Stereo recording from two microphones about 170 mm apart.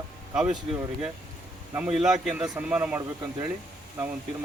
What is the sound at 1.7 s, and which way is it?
Speech, 5° right (ahead or behind).